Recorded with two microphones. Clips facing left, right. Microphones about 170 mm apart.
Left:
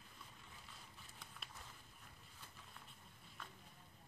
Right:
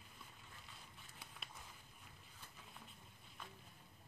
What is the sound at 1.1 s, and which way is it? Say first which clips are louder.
Walk: right 1 dB; centre (ahead or behind).